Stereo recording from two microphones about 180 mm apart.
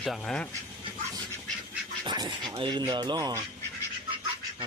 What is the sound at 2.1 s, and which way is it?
Speech, 25° right (ahead or behind).